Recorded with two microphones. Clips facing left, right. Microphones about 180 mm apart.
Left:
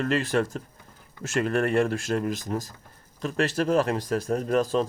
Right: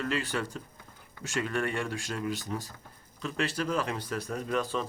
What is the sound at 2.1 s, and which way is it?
Speech, 45° left (ahead or behind).